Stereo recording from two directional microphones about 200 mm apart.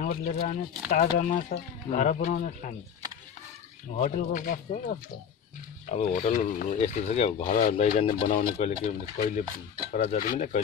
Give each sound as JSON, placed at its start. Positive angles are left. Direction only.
{"t": 0.0, "sound": "speech", "side_deg": 45}
{"t": 4.0, "sound": "speech", "side_deg": 40}